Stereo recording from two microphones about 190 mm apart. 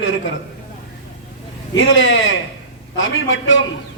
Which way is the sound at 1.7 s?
75° left (ahead or behind).